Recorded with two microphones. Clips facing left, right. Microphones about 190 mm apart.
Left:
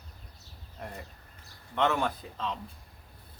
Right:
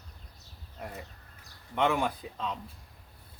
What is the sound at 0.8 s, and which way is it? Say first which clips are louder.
Speech: even; 5° right (ahead or behind).